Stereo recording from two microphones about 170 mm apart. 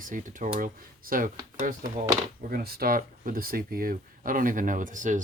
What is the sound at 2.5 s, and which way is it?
Speech, 65° right (ahead or behind).